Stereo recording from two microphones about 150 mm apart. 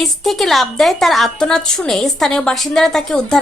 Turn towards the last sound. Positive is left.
turn(degrees=0)  # may be behind; listen again after turning